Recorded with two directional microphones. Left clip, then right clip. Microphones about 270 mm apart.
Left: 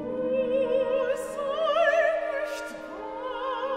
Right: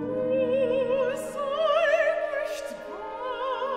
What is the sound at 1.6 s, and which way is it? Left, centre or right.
Opera, right.